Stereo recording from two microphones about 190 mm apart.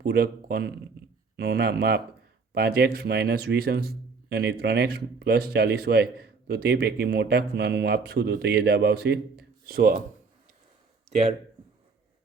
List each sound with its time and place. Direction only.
0.0 s a man's voice: 55° right (ahead or behind)
11.1 s speech: 35° right (ahead or behind)